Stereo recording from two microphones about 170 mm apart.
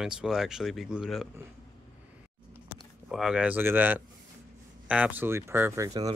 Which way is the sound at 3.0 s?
5° right (ahead or behind).